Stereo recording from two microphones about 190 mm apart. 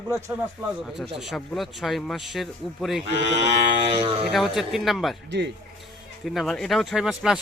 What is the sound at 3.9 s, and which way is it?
Speech, 30° right (ahead or behind).